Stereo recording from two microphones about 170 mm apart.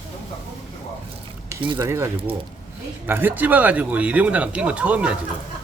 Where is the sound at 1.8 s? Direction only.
15° right (ahead or behind).